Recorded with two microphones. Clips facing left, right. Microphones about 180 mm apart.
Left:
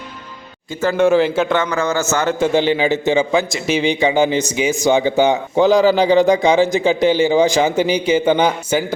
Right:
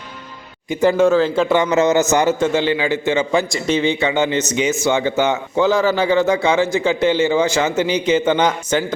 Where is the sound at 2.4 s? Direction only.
15° left (ahead or behind).